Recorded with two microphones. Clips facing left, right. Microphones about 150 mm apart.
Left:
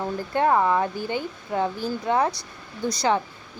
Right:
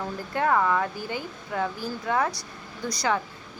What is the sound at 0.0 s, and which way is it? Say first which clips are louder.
Speech: left 4 dB; 25° left (ahead or behind).